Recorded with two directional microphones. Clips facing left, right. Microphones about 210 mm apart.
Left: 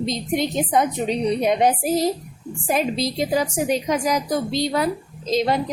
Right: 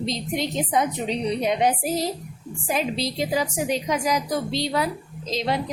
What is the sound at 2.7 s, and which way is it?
A woman's voice, 45° left (ahead or behind).